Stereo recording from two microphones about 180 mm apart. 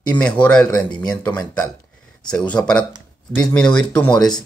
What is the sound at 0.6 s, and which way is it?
Speech, 25° left (ahead or behind).